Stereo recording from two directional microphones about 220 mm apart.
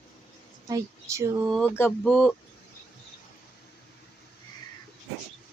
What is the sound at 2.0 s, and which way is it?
Speech, centre (ahead or behind).